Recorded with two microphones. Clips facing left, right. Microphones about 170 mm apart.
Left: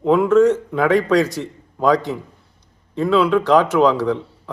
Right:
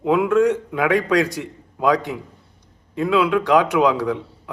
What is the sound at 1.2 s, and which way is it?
Speech, 40° left (ahead or behind).